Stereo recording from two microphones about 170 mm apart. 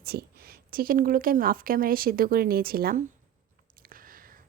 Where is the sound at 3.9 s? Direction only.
55° right (ahead or behind).